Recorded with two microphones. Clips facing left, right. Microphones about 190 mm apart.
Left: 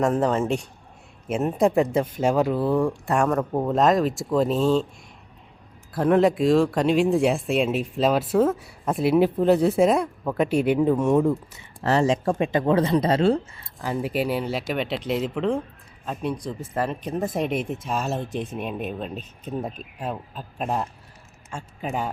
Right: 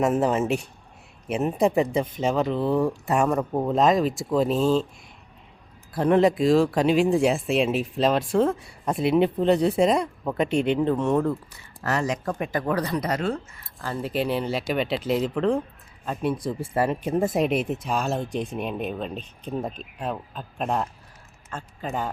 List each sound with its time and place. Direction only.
0.0 s speech: 5° right (ahead or behind)
5.9 s speech: centre (ahead or behind)
11.8 s speech: 30° left (ahead or behind)
13.8 s speech: 10° left (ahead or behind)